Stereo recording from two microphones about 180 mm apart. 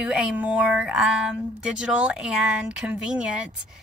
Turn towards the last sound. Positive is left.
turn(degrees=-5)  # may be behind; listen again after turning